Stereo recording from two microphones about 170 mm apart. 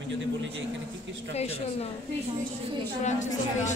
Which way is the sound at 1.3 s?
40° left (ahead or behind).